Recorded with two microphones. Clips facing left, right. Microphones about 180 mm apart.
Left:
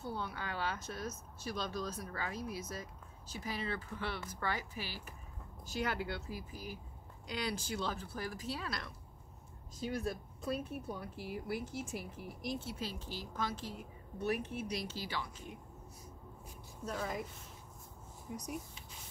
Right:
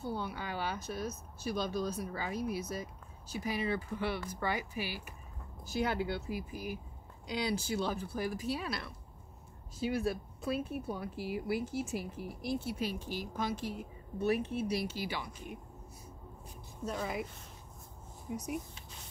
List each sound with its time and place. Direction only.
0.0 s speech: 10° right (ahead or behind)
12.0 s speech: 15° left (ahead or behind)
12.5 s speech: 10° right (ahead or behind)
16.9 s speech: 5° right (ahead or behind)
18.3 s speech: 5° right (ahead or behind)